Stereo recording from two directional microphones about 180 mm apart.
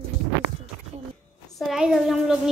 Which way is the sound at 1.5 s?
Centre (ahead or behind).